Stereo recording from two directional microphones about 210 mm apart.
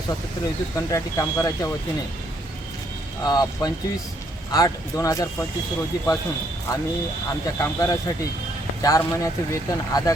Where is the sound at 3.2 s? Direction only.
20° left (ahead or behind).